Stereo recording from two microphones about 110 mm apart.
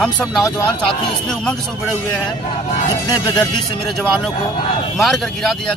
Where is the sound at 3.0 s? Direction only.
40° left (ahead or behind).